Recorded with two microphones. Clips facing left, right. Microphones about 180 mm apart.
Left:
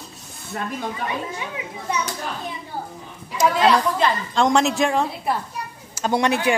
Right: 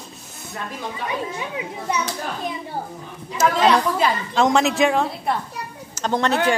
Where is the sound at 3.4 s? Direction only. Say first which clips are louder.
Even; centre (ahead or behind).